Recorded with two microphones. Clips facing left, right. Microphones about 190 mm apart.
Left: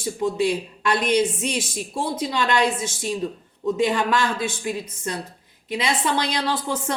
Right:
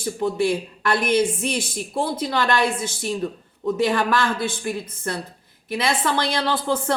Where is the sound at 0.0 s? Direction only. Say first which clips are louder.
Even; 15° left (ahead or behind).